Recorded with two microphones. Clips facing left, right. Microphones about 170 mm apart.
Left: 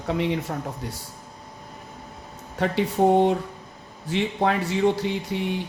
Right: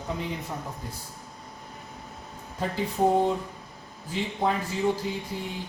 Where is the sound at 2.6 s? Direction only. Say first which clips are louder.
Left 5 dB; 75° left (ahead or behind).